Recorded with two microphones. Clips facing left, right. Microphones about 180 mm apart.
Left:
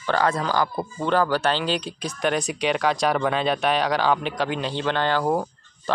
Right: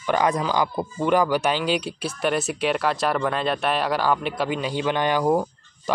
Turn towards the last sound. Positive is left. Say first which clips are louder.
# right 2 dB
turn(degrees=-10)  # may be behind; listen again after turning